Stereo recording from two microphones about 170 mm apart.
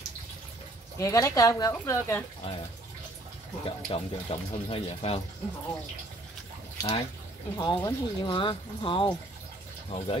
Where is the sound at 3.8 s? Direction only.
35° left (ahead or behind).